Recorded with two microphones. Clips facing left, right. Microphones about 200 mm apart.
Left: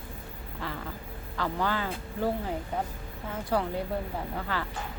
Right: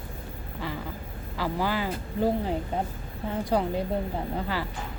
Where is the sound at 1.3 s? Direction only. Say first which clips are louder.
Right 2 dB; 5° right (ahead or behind).